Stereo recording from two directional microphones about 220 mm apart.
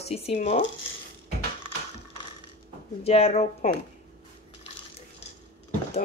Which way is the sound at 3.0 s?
25° left (ahead or behind).